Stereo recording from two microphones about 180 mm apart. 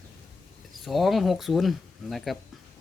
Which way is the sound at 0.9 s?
Centre (ahead or behind).